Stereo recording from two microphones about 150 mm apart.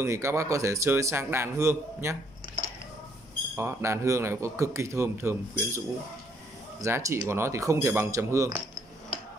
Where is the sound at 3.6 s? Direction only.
20° right (ahead or behind).